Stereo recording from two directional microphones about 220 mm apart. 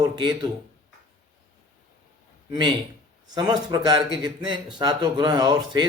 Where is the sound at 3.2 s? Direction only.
20° right (ahead or behind).